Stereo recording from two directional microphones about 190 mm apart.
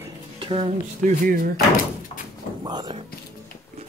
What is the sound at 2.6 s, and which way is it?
Speech, 20° right (ahead or behind).